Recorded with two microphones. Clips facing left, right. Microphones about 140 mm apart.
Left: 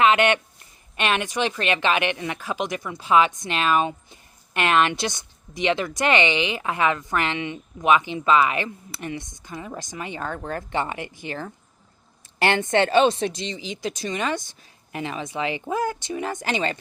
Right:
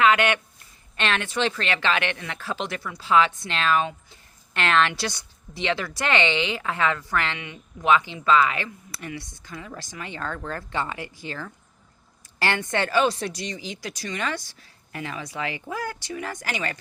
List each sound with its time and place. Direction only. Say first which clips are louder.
0.0 s speech: left 2 dB; 20° left (ahead or behind)